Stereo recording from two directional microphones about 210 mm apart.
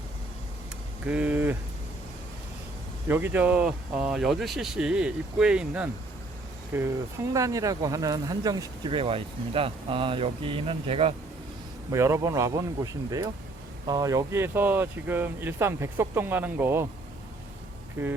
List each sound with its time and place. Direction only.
1.0 s speech: 5° right (ahead or behind)
3.1 s speech: 10° right (ahead or behind); by 11.1 s 25° right (ahead or behind)
11.9 s speech: 15° right (ahead or behind)